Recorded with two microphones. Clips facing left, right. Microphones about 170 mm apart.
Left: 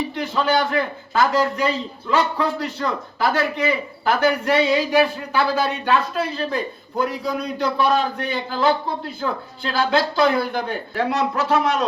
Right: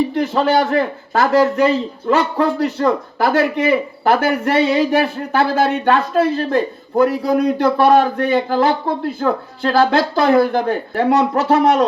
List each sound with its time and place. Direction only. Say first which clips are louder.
0.1 s a man's voice: right 5 dB; 50° right (ahead or behind)